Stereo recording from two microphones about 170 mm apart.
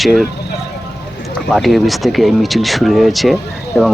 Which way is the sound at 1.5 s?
Centre (ahead or behind).